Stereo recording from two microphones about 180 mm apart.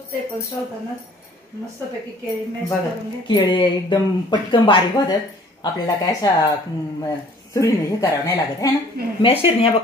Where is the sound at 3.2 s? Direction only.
25° left (ahead or behind).